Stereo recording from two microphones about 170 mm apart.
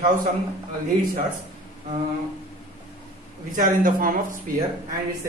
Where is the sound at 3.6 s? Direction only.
55° right (ahead or behind).